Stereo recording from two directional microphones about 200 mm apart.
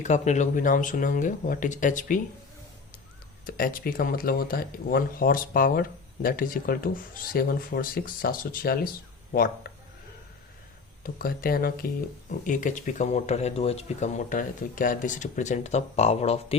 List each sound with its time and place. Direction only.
0.0 s speech: 35° left (ahead or behind)
3.4 s speech: 45° left (ahead or behind)
11.0 s speech: 45° left (ahead or behind); by 16.6 s 30° left (ahead or behind)